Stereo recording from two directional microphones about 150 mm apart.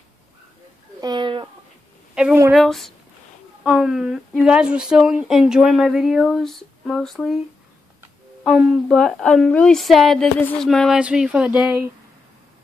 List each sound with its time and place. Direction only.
1.0 s a sound: 30° right (ahead or behind)
2.2 s speech: 5° right (ahead or behind)
8.5 s speech: 5° right (ahead or behind)